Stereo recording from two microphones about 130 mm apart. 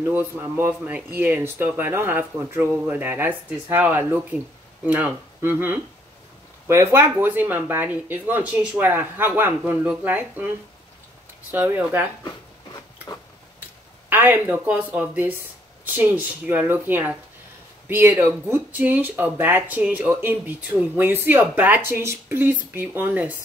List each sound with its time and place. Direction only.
0.1 s speech: 15° right (ahead or behind)
11.5 s speech: 15° right (ahead or behind)
14.0 s speech: 15° right (ahead or behind)